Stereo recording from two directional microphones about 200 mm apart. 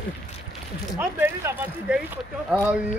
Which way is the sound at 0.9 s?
10° right (ahead or behind).